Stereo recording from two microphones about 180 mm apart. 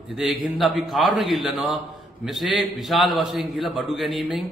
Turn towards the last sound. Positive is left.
turn(degrees=0)  # may be behind; listen again after turning